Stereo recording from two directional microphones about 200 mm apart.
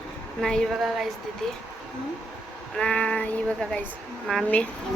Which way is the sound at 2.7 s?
5° left (ahead or behind).